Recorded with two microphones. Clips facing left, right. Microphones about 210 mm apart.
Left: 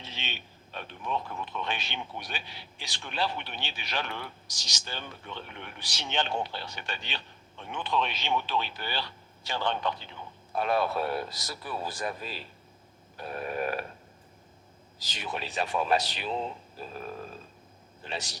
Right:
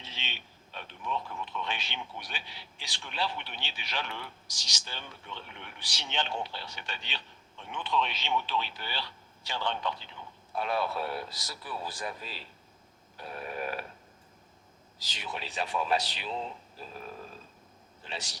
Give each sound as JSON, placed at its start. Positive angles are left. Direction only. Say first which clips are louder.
{"t": 0.0, "sound": "a sound", "louder": "left 4 dB", "side_deg": 50}
{"t": 1.5, "sound": "a man's voice", "louder": "left 3 dB", "side_deg": 50}
{"t": 13.1, "sound": "burping", "louder": "left 5 dB", "side_deg": 50}
{"t": 15.0, "sound": "a man's voice", "louder": "left 4 dB", "side_deg": 50}